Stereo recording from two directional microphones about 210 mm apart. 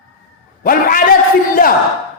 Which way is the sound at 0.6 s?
40° left (ahead or behind).